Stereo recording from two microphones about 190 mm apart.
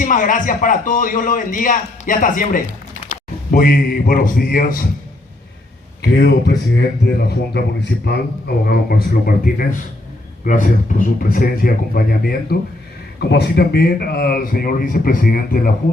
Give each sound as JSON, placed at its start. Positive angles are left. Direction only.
{"t": 0.0, "sound": "a man's voice", "side_deg": 45}
{"t": 6.0, "sound": "a man's voice", "side_deg": 60}